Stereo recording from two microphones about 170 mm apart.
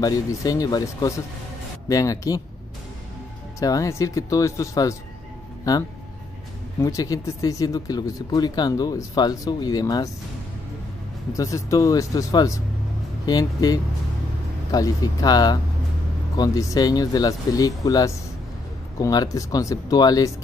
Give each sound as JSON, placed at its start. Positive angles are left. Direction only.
{"t": 0.0, "sound": "speech", "side_deg": 20}
{"t": 3.5, "sound": "speech", "side_deg": 20}
{"t": 11.3, "sound": "speech", "side_deg": 20}